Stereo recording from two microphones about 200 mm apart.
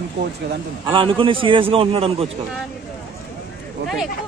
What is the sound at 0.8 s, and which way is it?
A man's voice, 25° right (ahead or behind).